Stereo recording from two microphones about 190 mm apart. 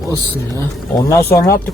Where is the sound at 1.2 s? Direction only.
15° left (ahead or behind).